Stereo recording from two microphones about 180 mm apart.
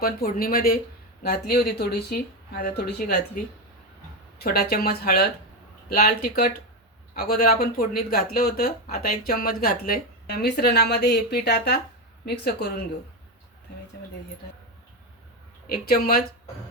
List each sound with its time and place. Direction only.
0.0 s speech: 55° left (ahead or behind)
4.4 s speech: 60° left (ahead or behind)
15.7 s speech: 55° left (ahead or behind)